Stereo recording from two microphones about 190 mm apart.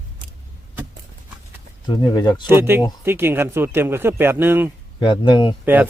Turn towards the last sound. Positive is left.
turn(degrees=-10)  # may be behind; listen again after turning